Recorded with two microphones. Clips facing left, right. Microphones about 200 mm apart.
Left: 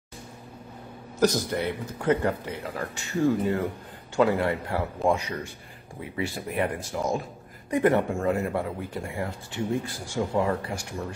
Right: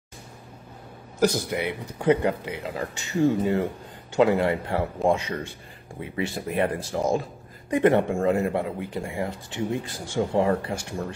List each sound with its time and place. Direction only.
1.2 s speech: 15° right (ahead or behind)